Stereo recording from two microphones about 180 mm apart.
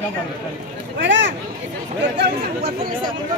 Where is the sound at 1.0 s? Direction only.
90° right.